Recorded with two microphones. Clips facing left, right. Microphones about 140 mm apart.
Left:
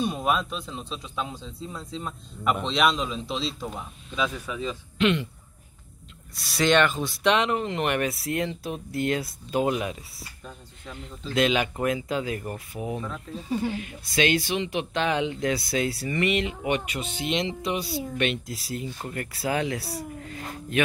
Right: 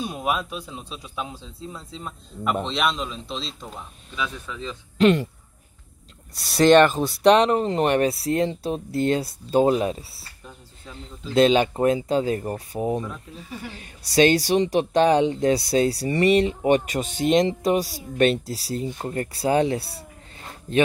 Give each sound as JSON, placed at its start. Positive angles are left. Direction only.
{"t": 0.0, "sound": "a man's voice", "side_deg": -5}
{"t": 4.9, "sound": "speech", "side_deg": -40}
{"t": 6.5, "sound": "speech", "side_deg": -40}
{"t": 11.3, "sound": "speech", "side_deg": -35}
{"t": 13.5, "sound": "speech", "side_deg": 30}
{"t": 13.7, "sound": "speech", "side_deg": -35}